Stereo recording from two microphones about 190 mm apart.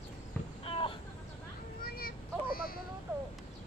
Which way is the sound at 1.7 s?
50° left (ahead or behind).